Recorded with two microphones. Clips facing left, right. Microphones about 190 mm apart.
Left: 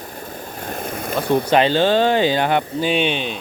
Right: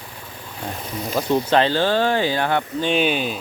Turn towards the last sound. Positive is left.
turn(degrees=-5)  # may be behind; listen again after turning